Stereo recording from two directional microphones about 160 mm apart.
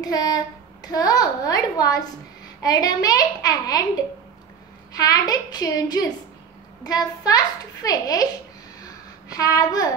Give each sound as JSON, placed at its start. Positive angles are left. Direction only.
{"t": 0.0, "sound": "a child's voice", "side_deg": 25}
{"t": 4.9, "sound": "a child's voice", "side_deg": 25}
{"t": 8.8, "sound": "babbling", "side_deg": 20}